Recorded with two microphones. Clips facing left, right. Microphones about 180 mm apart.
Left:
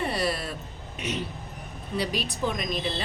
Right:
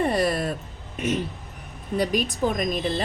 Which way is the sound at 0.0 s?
45° right (ahead or behind).